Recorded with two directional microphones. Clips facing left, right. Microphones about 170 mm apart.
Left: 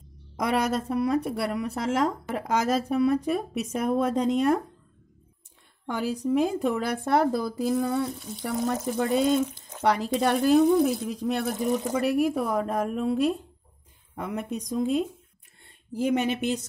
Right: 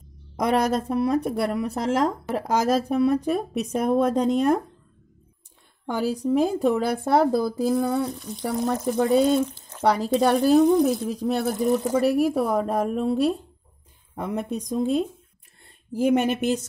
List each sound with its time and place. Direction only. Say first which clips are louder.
0.4 s speech: right 4 dB; 35° right (ahead or behind)
5.9 s speech: right 3 dB; 35° right (ahead or behind)
16.0 s speech: right 4 dB; 50° right (ahead or behind)